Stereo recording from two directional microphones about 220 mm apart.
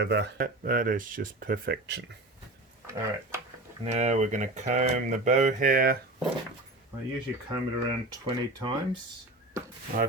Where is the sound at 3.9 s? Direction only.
30° right (ahead or behind).